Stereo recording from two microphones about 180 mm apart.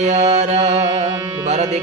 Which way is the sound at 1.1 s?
15° right (ahead or behind).